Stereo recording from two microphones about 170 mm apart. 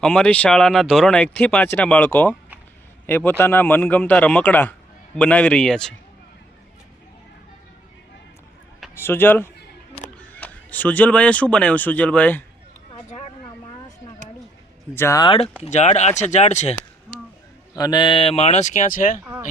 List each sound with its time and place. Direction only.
0.0 s a man's voice: 5° left (ahead or behind)
9.0 s speech: 15° left (ahead or behind)
12.9 s a sound: 40° left (ahead or behind)
14.9 s speech: 15° left (ahead or behind)
15.6 s speech: 40° left (ahead or behind)
17.7 s speech: 25° left (ahead or behind); by 19.2 s 50° left (ahead or behind)